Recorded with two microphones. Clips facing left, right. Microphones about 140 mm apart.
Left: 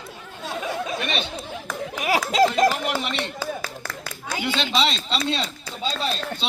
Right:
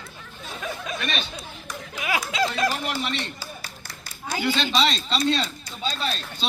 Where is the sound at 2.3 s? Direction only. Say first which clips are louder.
Left 8 dB; 40° left (ahead or behind).